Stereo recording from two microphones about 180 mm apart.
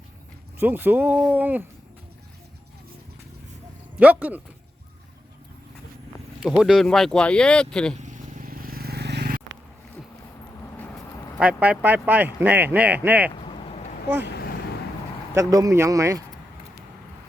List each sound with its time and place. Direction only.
0.6 s speech: 10° right (ahead or behind)
3.9 s speech: 10° right (ahead or behind)
6.4 s speech: 5° right (ahead or behind)
7.9 s vehicle: 40° right (ahead or behind); by 9.6 s 65° right (ahead or behind)
11.3 s speech: 5° right (ahead or behind)
13.3 s a sound: 30° left (ahead or behind)
15.4 s speech: 20° right (ahead or behind)